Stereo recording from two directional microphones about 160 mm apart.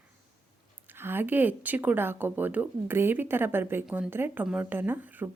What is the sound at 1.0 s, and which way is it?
A woman's voice, 15° right (ahead or behind).